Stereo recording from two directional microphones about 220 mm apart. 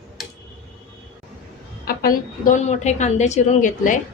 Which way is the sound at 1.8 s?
40° left (ahead or behind).